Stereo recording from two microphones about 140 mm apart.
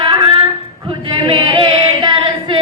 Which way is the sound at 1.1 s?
35° right (ahead or behind).